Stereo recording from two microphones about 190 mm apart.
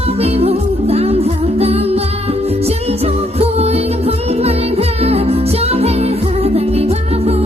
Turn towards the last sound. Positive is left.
turn(degrees=-35)  # may be behind; listen again after turning